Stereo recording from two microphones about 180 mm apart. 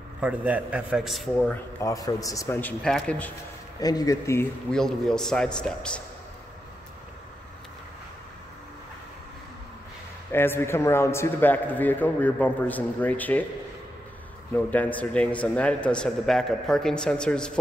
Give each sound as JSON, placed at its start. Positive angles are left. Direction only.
{"t": 0.2, "sound": "a man's voice", "side_deg": -5}
{"t": 3.8, "sound": "speech", "side_deg": 20}
{"t": 4.6, "sound": "a man's voice", "side_deg": 5}
{"t": 10.3, "sound": "a man's voice", "side_deg": 10}
{"t": 14.5, "sound": "a man's voice", "side_deg": 10}